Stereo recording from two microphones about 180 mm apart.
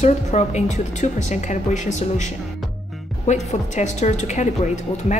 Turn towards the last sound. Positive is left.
turn(degrees=40)  # may be behind; listen again after turning